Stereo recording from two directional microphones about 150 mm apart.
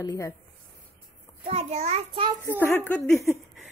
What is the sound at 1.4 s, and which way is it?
Speech, 45° right (ahead or behind).